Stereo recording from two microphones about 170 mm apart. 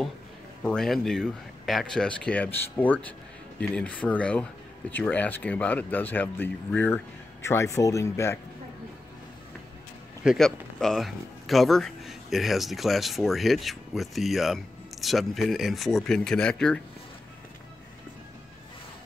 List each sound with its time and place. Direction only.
0.7 s speech: centre (ahead or behind)
10.2 s speech: centre (ahead or behind)